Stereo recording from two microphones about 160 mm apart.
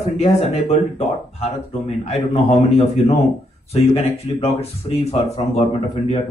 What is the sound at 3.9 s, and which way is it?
Speech, 40° left (ahead or behind).